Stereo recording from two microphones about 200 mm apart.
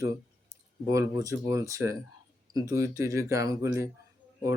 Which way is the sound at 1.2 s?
15° right (ahead or behind).